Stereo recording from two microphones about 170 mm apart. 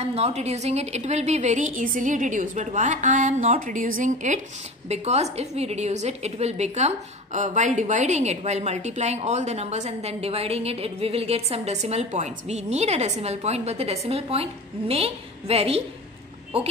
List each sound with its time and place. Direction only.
0.0 s a woman's voice: 40° right (ahead or behind)